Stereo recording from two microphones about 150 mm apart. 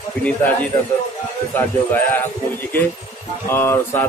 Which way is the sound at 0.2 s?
10° left (ahead or behind).